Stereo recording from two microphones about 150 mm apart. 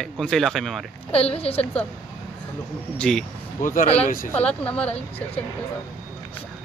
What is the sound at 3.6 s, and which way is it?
Speech, 60° left (ahead or behind).